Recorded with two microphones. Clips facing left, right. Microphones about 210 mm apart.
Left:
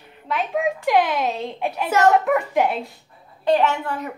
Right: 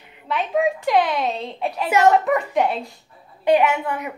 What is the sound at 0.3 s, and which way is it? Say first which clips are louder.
Speech: right 2 dB; centre (ahead or behind).